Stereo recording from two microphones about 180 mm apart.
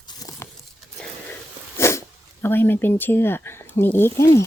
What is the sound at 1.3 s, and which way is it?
Sneeze, 15° left (ahead or behind).